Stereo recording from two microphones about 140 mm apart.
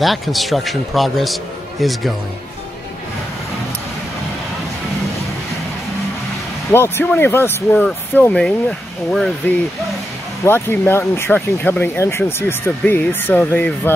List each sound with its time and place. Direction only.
0.0 s a man's voice: centre (ahead or behind)
6.7 s speech: 15° left (ahead or behind)
10.4 s speech: 15° left (ahead or behind)